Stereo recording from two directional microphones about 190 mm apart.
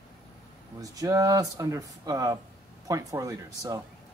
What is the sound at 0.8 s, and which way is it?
Speech, 20° right (ahead or behind).